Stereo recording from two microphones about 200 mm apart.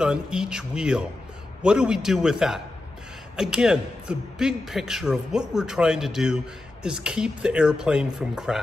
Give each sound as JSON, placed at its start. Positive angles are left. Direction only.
{"t": 0.0, "sound": "speech", "side_deg": -5}